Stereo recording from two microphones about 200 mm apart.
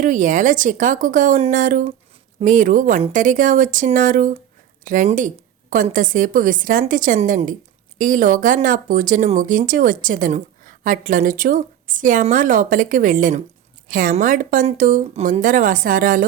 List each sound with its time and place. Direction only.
0.0 s speech: 40° right (ahead or behind)